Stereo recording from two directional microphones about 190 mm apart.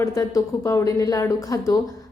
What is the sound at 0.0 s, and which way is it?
A woman's voice, 15° left (ahead or behind).